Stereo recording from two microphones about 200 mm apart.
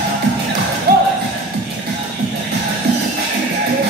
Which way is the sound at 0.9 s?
50° right (ahead or behind).